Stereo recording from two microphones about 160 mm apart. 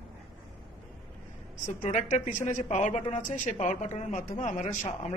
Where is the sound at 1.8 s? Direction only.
50° left (ahead or behind).